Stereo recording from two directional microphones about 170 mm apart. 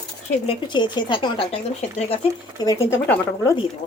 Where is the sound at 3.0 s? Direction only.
10° left (ahead or behind).